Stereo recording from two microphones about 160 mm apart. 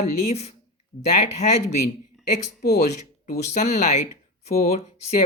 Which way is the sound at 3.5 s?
45° left (ahead or behind).